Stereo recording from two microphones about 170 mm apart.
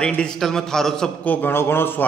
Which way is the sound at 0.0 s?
5° left (ahead or behind).